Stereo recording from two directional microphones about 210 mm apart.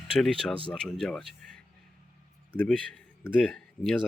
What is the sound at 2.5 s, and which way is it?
A man's voice, 10° left (ahead or behind).